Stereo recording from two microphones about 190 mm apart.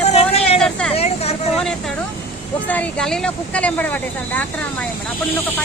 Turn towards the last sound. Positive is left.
turn(degrees=10)  # may be behind; listen again after turning